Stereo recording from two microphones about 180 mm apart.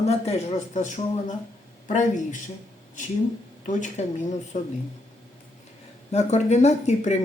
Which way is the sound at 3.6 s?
40° left (ahead or behind).